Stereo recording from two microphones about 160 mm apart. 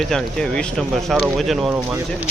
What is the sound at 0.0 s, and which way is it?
Speech, 5° left (ahead or behind).